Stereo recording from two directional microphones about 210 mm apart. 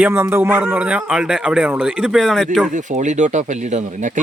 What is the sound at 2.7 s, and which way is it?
Speech, 35° right (ahead or behind).